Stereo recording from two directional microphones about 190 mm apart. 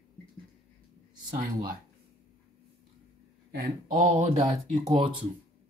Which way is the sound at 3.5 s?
40° right (ahead or behind).